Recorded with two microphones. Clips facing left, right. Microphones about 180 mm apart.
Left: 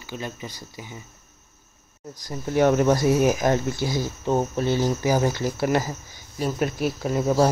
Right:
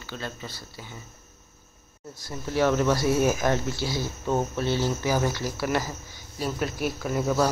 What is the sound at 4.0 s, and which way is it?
Speech, 15° left (ahead or behind).